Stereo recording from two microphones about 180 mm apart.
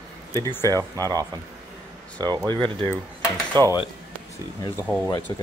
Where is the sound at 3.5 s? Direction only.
20° right (ahead or behind).